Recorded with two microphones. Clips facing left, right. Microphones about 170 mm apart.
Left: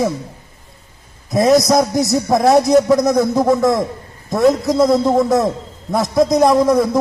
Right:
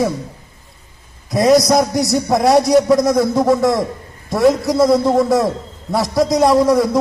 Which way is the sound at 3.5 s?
Centre (ahead or behind).